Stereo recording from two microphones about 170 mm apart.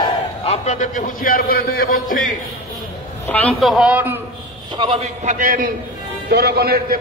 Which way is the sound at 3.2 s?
10° left (ahead or behind).